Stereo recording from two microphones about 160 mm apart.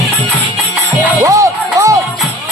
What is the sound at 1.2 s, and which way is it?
Music, 20° right (ahead or behind).